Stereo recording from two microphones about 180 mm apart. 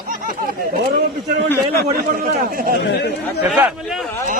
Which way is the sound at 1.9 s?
55° right (ahead or behind).